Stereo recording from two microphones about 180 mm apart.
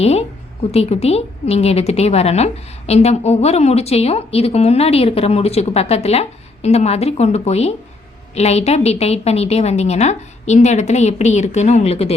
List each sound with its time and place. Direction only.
0.0 s a woman's voice: 35° left (ahead or behind)